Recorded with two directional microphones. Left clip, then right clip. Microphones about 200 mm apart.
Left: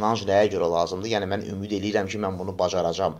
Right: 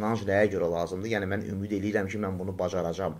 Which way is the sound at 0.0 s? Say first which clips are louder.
Left 5 dB; 10° right (ahead or behind).